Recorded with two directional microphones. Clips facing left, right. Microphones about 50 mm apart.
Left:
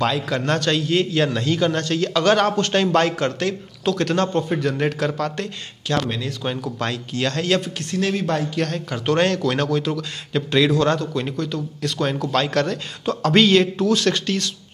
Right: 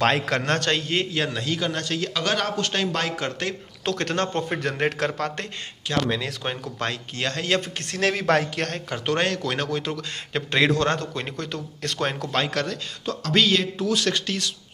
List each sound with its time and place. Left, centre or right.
0.0 s a man's voice: right
0.5 s a man's voice: right
1.1 s a man's voice: centre
3.8 s a man's voice: right
5.9 s a man's voice: centre
7.9 s speech: right
8.5 s a man's voice: right
9.0 s speech: centre
9.7 s a man's voice: right
11.3 s a man's voice: right
12.3 s a man's voice: right
13.0 s a man's voice: centre